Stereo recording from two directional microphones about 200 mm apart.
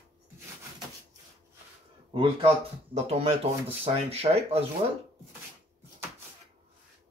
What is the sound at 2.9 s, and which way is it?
Speech, 30° right (ahead or behind).